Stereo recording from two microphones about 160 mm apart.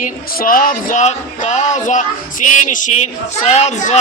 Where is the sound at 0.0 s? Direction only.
60° left (ahead or behind).